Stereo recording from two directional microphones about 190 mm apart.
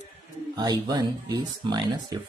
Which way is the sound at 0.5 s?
20° right (ahead or behind).